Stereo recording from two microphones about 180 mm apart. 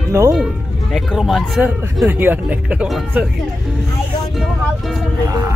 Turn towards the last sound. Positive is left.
turn(degrees=0)  # may be behind; listen again after turning